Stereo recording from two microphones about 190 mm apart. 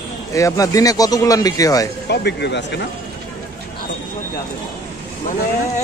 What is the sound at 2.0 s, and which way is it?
Speech, 65° left (ahead or behind).